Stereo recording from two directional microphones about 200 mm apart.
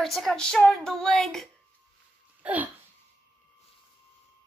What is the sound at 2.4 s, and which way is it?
Hiccup, 10° right (ahead or behind).